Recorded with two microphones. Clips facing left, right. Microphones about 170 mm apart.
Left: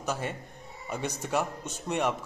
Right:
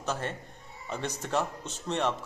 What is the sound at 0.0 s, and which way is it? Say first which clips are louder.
A man's voice: left 1 dB; 10° left (ahead or behind).